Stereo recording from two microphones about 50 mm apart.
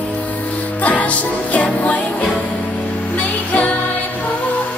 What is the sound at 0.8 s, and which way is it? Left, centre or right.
Music, left.